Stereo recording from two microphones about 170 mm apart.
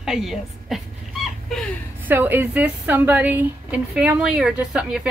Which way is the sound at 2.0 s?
10° right (ahead or behind).